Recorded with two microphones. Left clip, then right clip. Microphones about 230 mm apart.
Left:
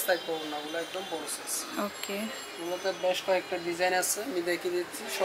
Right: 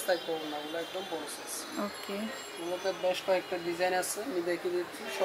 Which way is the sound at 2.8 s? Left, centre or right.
Centre.